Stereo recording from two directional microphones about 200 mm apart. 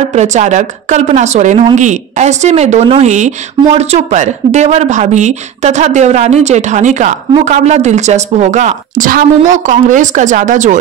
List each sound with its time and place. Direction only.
0.1 s a woman's voice: 35° right (ahead or behind)